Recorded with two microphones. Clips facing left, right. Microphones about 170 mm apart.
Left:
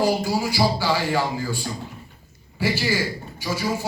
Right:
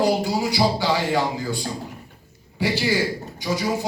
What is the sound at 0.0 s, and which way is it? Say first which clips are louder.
A man's voice: right 1 dB; 20° right (ahead or behind).